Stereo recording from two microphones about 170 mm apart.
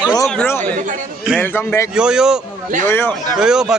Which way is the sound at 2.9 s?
15° left (ahead or behind).